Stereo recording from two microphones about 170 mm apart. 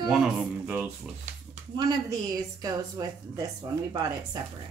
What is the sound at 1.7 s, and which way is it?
A woman's voice, 25° right (ahead or behind).